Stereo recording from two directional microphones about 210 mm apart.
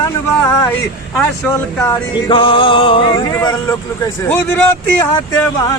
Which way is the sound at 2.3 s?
25° left (ahead or behind).